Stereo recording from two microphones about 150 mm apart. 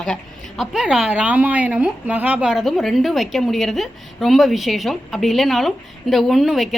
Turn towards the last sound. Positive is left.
turn(degrees=0)  # may be behind; listen again after turning